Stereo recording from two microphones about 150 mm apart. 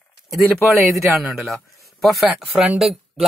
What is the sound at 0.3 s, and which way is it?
A man's voice, centre (ahead or behind).